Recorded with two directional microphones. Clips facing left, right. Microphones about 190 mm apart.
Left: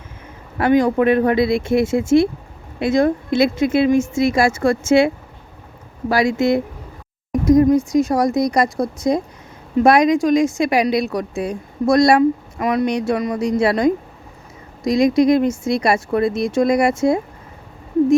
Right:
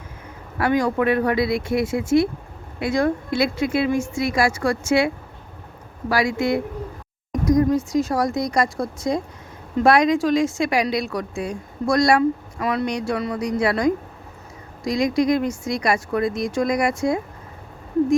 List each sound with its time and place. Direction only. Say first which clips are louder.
0.6 s speech: left 5 dB; 20° left (ahead or behind)